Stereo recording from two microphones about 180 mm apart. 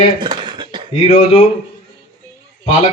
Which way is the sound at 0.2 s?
25° right (ahead or behind).